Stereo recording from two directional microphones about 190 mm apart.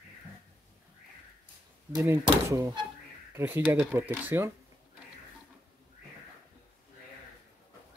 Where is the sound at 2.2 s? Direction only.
15° right (ahead or behind).